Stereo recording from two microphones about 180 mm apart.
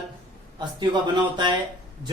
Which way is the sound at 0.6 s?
25° right (ahead or behind).